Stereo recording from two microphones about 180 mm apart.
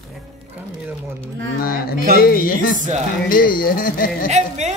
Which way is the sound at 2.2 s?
55° left (ahead or behind).